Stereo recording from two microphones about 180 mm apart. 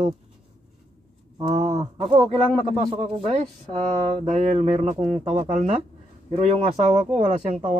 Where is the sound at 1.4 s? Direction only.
25° right (ahead or behind).